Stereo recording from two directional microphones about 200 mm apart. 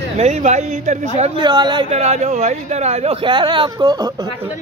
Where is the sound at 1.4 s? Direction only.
20° right (ahead or behind).